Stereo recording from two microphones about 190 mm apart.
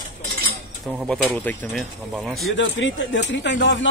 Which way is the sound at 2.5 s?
75° left (ahead or behind).